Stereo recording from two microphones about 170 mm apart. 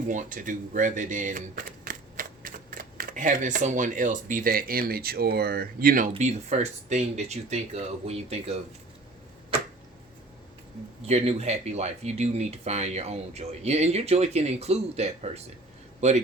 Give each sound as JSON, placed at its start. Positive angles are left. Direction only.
{"t": 0.1, "sound": "speech", "side_deg": -50}
{"t": 11.0, "sound": "speech", "side_deg": -40}